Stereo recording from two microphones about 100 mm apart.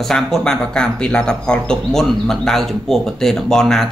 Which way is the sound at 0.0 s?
5° left (ahead or behind).